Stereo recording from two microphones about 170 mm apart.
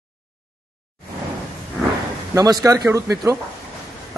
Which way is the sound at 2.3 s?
20° right (ahead or behind).